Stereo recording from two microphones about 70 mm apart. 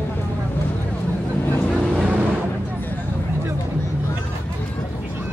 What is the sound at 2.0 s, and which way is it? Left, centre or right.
Vehicle, right.